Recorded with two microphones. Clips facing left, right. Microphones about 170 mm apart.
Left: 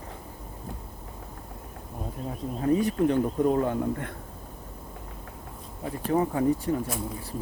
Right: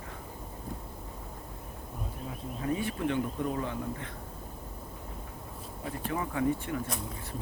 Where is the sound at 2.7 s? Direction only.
40° left (ahead or behind).